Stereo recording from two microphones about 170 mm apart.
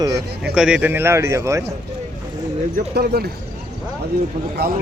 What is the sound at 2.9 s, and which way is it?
Speech, 65° right (ahead or behind).